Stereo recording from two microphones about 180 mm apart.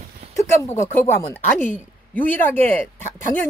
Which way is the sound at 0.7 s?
15° left (ahead or behind).